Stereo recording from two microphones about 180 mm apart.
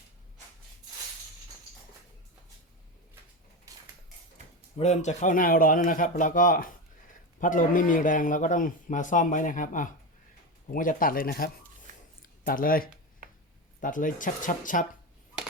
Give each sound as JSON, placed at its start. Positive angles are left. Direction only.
{"t": 4.8, "sound": "a man's voice", "side_deg": 40}